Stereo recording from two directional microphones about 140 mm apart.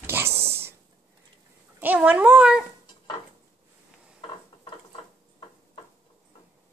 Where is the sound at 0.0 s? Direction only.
15° right (ahead or behind).